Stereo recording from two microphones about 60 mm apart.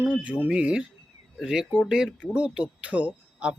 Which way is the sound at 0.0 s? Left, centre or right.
Right.